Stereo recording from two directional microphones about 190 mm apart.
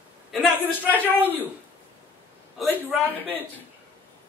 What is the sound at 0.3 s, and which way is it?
A man's voice, 5° left (ahead or behind).